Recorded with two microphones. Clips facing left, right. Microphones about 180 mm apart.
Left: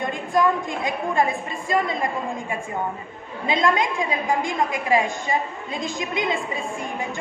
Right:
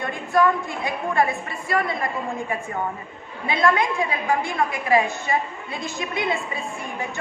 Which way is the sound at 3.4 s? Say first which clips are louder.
Even; 15° left (ahead or behind).